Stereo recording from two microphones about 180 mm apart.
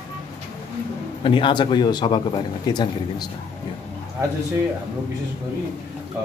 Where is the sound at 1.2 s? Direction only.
30° left (ahead or behind).